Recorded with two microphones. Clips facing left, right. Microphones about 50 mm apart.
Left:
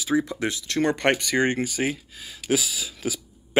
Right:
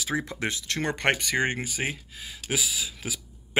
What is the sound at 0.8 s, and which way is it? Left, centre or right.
Speech, centre.